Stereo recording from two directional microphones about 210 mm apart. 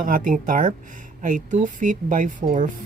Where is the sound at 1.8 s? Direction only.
40° right (ahead or behind).